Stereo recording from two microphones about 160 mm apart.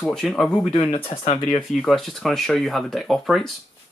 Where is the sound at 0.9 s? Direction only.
35° left (ahead or behind).